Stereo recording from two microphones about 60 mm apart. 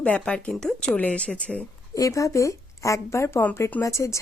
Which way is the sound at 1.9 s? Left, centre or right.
Left.